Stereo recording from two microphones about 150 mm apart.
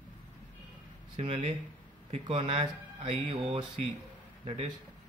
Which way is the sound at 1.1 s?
40° right (ahead or behind).